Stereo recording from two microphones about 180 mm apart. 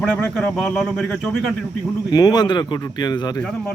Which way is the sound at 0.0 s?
5° left (ahead or behind).